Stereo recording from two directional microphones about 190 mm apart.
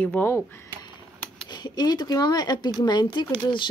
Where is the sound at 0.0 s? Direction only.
10° left (ahead or behind).